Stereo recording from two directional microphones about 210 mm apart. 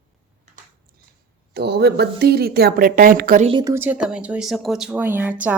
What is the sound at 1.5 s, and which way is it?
Speech, 50° right (ahead or behind).